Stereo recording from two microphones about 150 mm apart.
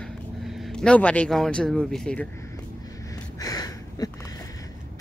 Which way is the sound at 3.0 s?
25° left (ahead or behind).